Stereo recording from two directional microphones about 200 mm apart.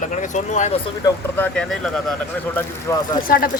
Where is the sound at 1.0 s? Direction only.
5° left (ahead or behind).